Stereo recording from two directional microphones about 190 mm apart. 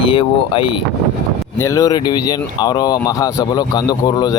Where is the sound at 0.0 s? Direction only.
25° left (ahead or behind).